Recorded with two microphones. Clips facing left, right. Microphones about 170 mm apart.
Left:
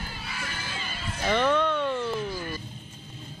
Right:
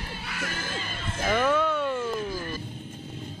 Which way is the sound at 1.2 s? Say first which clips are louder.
Even; 5° right (ahead or behind).